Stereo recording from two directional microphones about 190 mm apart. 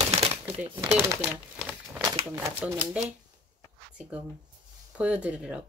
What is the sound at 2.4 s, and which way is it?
Speech, 10° right (ahead or behind).